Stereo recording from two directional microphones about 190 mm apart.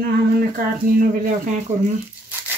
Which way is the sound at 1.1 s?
45° right (ahead or behind).